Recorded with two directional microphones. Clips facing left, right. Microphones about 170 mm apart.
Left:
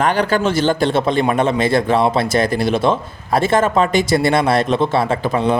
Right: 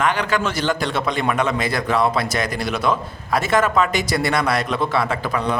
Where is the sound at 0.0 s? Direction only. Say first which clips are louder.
Left 5 dB; 35° left (ahead or behind).